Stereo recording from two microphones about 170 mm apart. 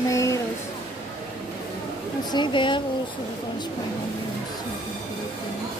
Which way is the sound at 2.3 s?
30° left (ahead or behind).